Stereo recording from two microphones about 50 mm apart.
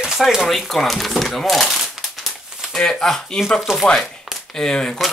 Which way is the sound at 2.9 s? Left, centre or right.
Centre.